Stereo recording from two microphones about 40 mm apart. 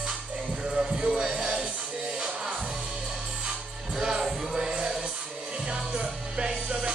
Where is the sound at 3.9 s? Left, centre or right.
Centre.